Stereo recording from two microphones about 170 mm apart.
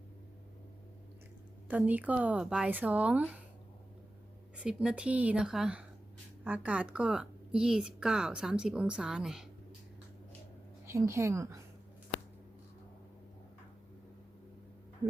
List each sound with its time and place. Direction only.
1.6 s speech: 10° right (ahead or behind)
4.5 s a woman's voice: 5° right (ahead or behind)
10.8 s a woman's voice: 15° right (ahead or behind)